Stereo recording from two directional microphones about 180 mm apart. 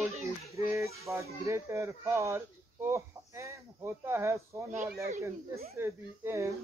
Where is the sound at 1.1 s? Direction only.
15° right (ahead or behind).